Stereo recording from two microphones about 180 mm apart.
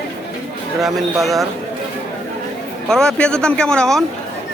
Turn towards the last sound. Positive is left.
turn(degrees=5)  # may be behind; listen again after turning